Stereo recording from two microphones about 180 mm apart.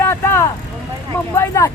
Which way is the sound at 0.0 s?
15° left (ahead or behind).